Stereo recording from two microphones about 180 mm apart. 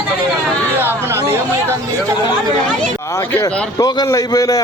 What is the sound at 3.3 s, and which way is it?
A man's voice, 15° left (ahead or behind).